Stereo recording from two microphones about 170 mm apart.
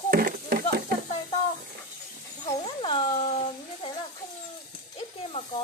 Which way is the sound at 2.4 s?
30° left (ahead or behind).